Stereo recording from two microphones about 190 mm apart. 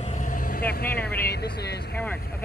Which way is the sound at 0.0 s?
40° left (ahead or behind).